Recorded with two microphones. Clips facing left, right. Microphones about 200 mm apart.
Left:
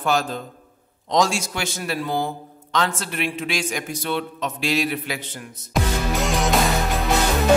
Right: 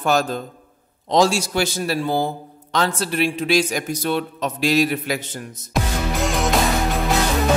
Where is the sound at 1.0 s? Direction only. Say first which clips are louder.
Right 3 dB; 35° right (ahead or behind).